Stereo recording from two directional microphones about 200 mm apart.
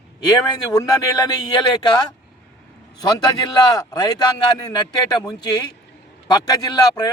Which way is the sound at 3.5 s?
20° left (ahead or behind).